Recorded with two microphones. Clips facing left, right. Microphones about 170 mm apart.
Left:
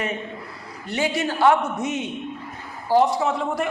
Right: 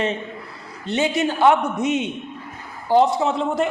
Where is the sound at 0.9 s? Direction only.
20° right (ahead or behind).